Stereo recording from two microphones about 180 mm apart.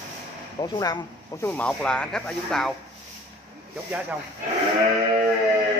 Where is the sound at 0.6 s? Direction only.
20° left (ahead or behind).